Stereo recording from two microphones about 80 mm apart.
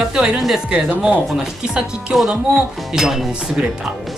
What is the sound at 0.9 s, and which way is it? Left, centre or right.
Speech, centre.